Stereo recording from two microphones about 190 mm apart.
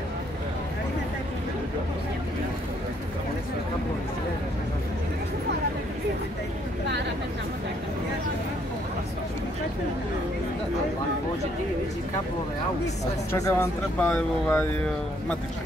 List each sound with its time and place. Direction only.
13.3 s speech: 15° left (ahead or behind)